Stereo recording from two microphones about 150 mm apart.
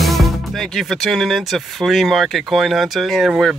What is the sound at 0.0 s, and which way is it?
A man's voice, centre (ahead or behind).